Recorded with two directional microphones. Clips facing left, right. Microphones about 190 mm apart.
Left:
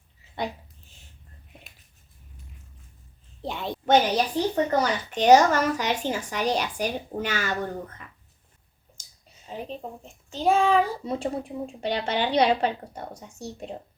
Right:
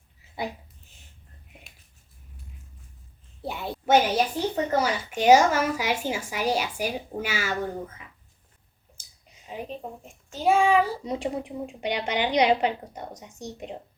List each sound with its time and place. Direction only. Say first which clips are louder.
3.4 s speech: left 1 dB; 10° right (ahead or behind)